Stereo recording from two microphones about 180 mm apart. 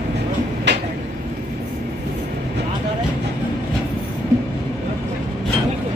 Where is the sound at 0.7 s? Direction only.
75° right (ahead or behind).